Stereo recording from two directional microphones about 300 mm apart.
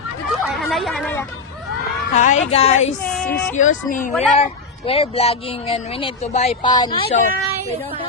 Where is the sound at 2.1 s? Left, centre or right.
Left.